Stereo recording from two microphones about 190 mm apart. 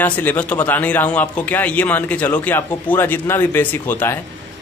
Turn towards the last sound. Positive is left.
turn(degrees=10)  # may be behind; listen again after turning